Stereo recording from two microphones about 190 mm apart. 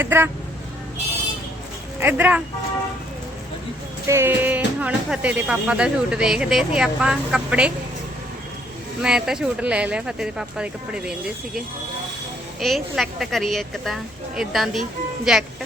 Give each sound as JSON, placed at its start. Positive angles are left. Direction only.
{"t": 0.0, "sound": "speech", "side_deg": -10}
{"t": 2.0, "sound": "speech", "side_deg": -10}
{"t": 4.0, "sound": "speech", "side_deg": -15}
{"t": 9.0, "sound": "speech", "side_deg": -5}
{"t": 12.5, "sound": "speech", "side_deg": 0}